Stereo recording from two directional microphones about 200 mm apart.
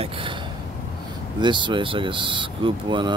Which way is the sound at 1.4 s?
25° right (ahead or behind).